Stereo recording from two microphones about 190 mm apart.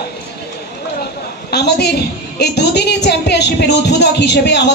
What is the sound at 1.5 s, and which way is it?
A woman's voice, 60° left (ahead or behind).